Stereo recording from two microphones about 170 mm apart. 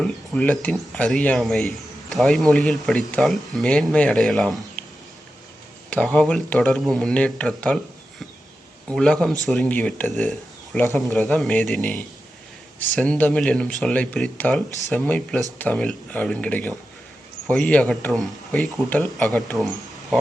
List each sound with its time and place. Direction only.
0.0 s speech: 10° left (ahead or behind)
5.9 s speech: 10° left (ahead or behind)
8.9 s speech: 5° left (ahead or behind)